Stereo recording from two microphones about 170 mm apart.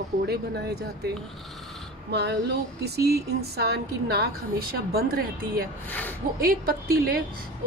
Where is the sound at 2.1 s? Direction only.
75° right (ahead or behind).